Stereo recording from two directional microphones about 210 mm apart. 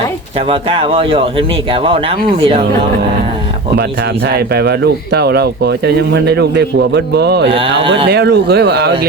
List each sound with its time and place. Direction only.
0.3 s speech: 25° right (ahead or behind)
4.4 s speech: 50° right (ahead or behind)
7.5 s speech: 25° right (ahead or behind)
8.1 s speech: 50° right (ahead or behind)